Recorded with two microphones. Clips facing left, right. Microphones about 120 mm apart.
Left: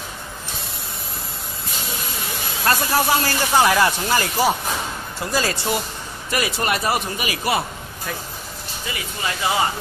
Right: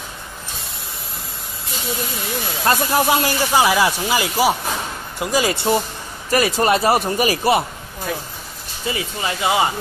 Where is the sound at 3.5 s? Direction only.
5° right (ahead or behind).